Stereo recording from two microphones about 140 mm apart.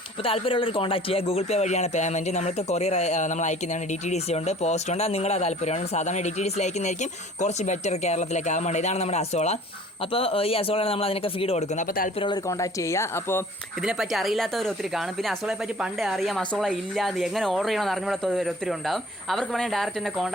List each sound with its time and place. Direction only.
0.3 s speech: 40° left (ahead or behind)
12.2 s speech: 25° left (ahead or behind)
13.8 s speech: centre (ahead or behind)